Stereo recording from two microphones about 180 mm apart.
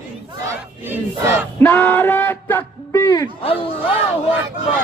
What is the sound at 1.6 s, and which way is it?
Speech, 10° left (ahead or behind).